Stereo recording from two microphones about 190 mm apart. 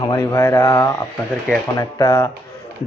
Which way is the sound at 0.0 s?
20° left (ahead or behind).